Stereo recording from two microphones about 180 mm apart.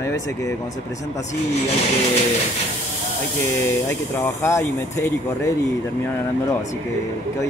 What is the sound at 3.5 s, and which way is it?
Speech, 15° left (ahead or behind).